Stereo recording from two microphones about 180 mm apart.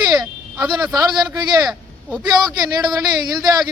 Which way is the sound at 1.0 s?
20° right (ahead or behind).